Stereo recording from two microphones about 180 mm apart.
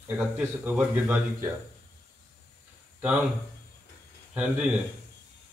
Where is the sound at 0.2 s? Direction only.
10° right (ahead or behind).